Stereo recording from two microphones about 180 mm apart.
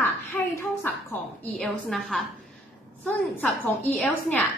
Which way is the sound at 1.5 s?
Centre (ahead or behind).